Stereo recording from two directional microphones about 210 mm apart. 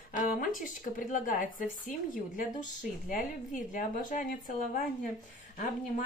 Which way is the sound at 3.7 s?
40° left (ahead or behind).